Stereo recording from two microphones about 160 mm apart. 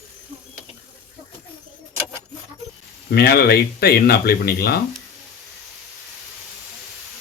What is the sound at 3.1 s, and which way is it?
Speech, 75° left (ahead or behind).